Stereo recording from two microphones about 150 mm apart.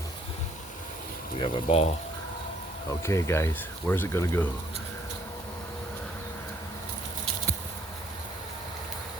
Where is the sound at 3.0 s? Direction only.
20° left (ahead or behind).